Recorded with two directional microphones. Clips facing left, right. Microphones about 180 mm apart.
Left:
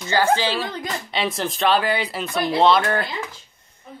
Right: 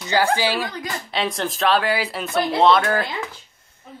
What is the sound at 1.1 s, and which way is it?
Speech, centre (ahead or behind).